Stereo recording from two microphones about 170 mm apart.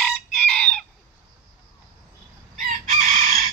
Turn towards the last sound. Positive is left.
turn(degrees=-50)  # may be behind; listen again after turning